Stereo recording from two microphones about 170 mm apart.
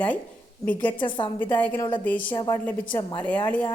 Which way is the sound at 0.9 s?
30° left (ahead or behind).